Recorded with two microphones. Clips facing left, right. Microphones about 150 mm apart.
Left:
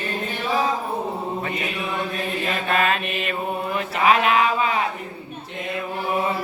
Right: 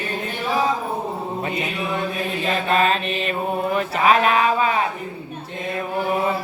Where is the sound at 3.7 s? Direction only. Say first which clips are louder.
Right 1 dB; 35° right (ahead or behind).